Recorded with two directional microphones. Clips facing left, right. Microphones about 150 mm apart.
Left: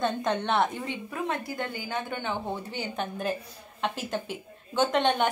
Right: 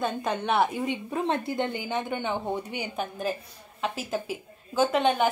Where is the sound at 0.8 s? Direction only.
25° right (ahead or behind).